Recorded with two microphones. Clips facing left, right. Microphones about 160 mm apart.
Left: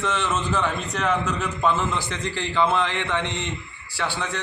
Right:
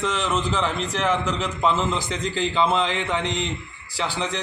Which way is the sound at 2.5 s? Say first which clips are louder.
Left 1 dB; 20° right (ahead or behind).